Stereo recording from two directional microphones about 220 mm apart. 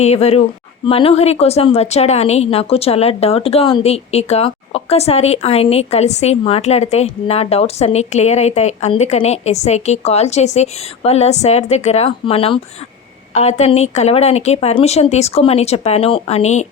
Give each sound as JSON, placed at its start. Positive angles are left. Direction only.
{"t": 0.0, "sound": "a woman's voice", "side_deg": 30}